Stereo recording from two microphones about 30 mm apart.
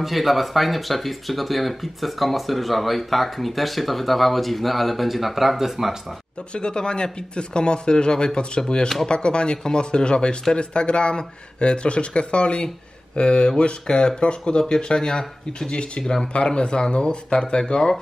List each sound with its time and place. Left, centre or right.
0.0 s speech: centre
6.5 s speech: left
16.0 s speech: centre
16.3 s speech: left